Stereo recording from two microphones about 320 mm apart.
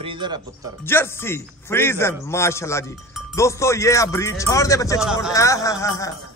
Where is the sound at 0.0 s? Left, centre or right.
Centre.